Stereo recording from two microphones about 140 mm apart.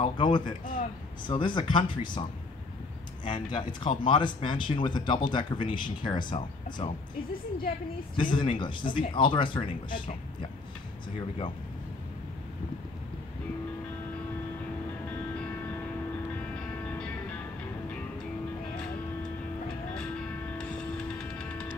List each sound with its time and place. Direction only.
0.0 s speech: 35° left (ahead or behind)
3.3 s speech: 35° left (ahead or behind)
8.2 s speech: 35° left (ahead or behind)
16.8 s music: 10° left (ahead or behind)
20.0 s music: 5° left (ahead or behind)